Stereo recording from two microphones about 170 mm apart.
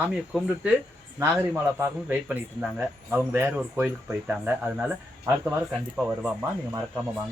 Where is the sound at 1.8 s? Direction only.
10° right (ahead or behind).